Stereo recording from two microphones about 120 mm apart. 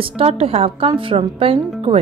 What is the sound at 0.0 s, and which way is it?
Speech, 55° right (ahead or behind).